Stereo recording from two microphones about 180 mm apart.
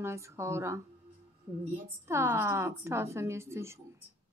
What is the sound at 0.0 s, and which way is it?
Speech, 15° right (ahead or behind).